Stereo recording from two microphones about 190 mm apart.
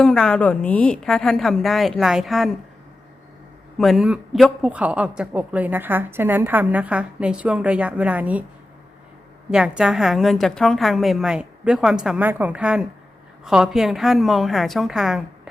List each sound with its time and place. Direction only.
0.0 s a woman's voice: 5° left (ahead or behind)
3.8 s speech: centre (ahead or behind)
9.5 s a woman's voice: 5° right (ahead or behind)